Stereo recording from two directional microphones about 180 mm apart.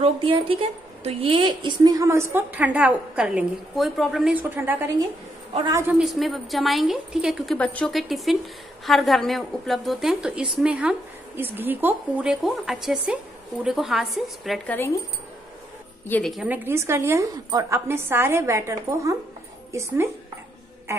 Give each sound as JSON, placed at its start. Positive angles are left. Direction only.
{"t": 0.0, "sound": "a woman's voice", "side_deg": -30}
{"t": 5.9, "sound": "speech", "side_deg": 0}
{"t": 16.1, "sound": "a woman's voice", "side_deg": 0}